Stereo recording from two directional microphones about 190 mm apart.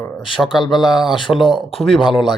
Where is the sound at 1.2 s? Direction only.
25° left (ahead or behind).